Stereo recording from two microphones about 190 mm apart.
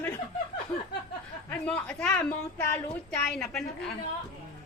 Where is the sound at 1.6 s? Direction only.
5° left (ahead or behind).